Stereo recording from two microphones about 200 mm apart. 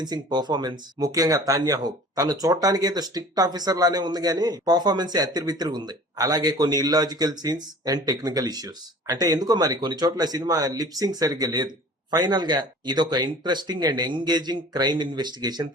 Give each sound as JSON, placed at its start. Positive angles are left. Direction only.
{"t": 0.0, "sound": "speech", "side_deg": -20}